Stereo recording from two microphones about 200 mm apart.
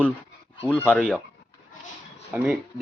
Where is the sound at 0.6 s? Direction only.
10° left (ahead or behind).